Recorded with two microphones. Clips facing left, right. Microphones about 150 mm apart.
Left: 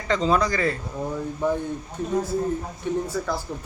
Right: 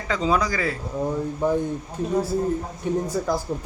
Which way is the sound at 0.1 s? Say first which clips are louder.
Left 1 dB; 10° right (ahead or behind).